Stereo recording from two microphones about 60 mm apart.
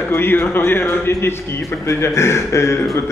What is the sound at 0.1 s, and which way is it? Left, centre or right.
Speech, left.